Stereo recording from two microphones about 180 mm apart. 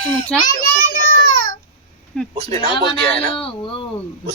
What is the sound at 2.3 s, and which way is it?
Speech, 35° right (ahead or behind).